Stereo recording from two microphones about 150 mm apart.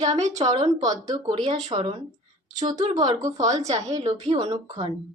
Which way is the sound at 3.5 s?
50° right (ahead or behind).